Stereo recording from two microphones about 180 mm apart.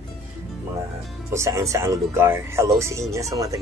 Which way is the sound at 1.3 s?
15° right (ahead or behind).